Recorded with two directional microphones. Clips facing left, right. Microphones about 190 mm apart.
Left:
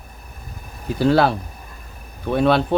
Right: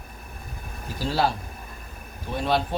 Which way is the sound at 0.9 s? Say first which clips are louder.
Left 9 dB; 65° left (ahead or behind).